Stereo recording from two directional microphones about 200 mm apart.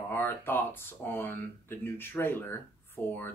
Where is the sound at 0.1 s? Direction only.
10° left (ahead or behind).